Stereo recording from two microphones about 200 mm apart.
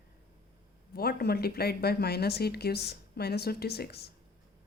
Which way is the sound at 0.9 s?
50° left (ahead or behind).